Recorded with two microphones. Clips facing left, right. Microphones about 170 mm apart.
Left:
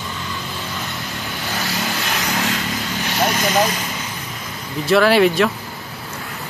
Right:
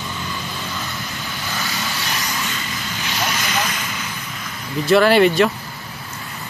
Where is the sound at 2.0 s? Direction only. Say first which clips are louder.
Left 4 dB; 65° left (ahead or behind).